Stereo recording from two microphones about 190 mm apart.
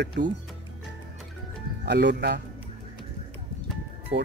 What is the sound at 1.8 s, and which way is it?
Speech, 65° right (ahead or behind).